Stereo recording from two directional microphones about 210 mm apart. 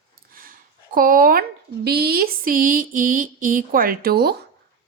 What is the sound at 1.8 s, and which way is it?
A woman's voice, 50° right (ahead or behind).